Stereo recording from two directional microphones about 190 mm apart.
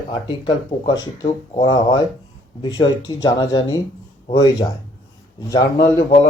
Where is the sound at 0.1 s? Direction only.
25° left (ahead or behind).